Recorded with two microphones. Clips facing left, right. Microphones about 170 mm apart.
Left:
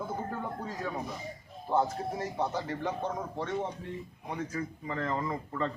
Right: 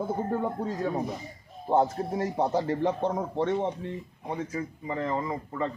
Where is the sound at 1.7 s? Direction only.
35° right (ahead or behind); by 5.7 s 15° right (ahead or behind).